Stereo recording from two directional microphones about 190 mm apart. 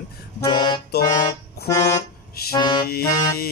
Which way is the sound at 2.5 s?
25° left (ahead or behind).